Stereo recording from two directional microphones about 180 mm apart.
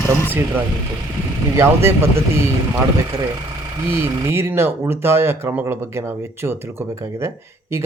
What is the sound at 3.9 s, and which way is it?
Speech, 15° right (ahead or behind).